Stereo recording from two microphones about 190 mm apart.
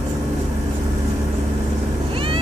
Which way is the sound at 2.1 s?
30° right (ahead or behind).